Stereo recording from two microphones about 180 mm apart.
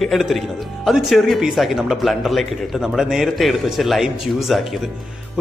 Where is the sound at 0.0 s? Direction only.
Centre (ahead or behind).